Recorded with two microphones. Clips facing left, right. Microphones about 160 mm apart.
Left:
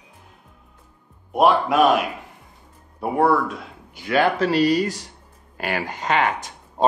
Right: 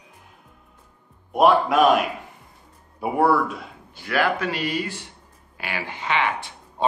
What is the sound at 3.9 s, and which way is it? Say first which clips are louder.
Speech: left 3 dB; 20° left (ahead or behind).